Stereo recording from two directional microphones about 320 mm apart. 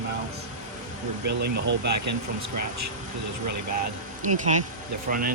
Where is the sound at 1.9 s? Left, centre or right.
Right.